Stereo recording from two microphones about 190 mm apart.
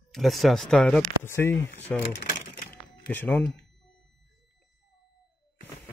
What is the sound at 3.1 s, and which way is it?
Speech, 10° left (ahead or behind).